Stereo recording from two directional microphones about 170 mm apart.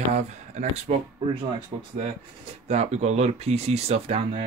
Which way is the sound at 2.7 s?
40° right (ahead or behind).